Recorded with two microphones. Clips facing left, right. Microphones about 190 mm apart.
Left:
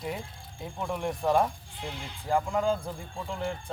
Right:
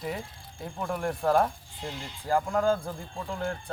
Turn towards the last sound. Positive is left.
turn(degrees=0)  # may be behind; listen again after turning